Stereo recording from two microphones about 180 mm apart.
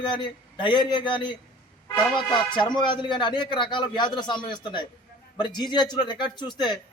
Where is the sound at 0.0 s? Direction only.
25° left (ahead or behind).